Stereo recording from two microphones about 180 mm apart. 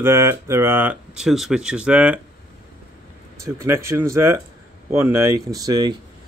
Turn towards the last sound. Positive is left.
turn(degrees=-20)  # may be behind; listen again after turning